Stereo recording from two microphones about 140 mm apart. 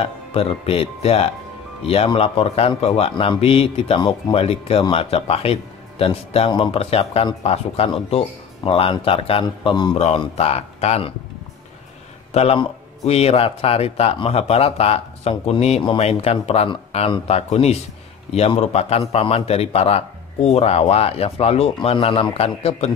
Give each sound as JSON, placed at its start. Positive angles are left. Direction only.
{"t": 0.0, "sound": "a man's voice", "side_deg": 45}
{"t": 9.9, "sound": "a man's voice", "side_deg": 50}
{"t": 12.3, "sound": "a man's voice", "side_deg": 50}